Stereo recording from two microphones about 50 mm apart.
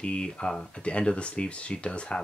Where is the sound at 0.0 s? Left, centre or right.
Left.